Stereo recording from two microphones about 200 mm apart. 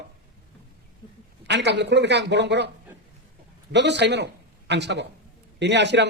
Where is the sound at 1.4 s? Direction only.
60° right (ahead or behind).